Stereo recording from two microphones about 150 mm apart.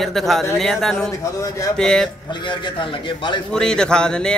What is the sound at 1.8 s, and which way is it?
Speech, 5° left (ahead or behind).